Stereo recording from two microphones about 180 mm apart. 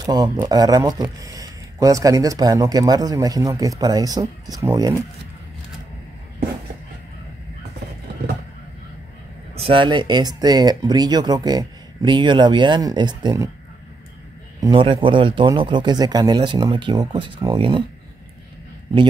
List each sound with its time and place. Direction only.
0.0 s speech: 20° right (ahead or behind)
9.6 s speech: 30° right (ahead or behind)
14.6 s speech: 30° right (ahead or behind)